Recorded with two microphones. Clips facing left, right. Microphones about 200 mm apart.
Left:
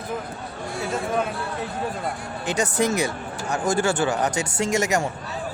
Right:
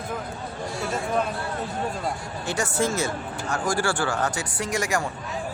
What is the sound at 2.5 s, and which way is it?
Speech, 20° left (ahead or behind).